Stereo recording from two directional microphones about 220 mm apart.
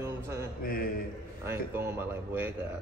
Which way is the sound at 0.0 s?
15° right (ahead or behind).